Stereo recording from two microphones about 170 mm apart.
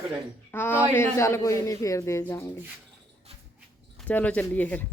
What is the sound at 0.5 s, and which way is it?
Speech, 10° left (ahead or behind).